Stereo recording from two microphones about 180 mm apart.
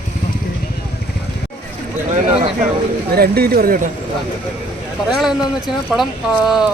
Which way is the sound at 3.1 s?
60° right (ahead or behind).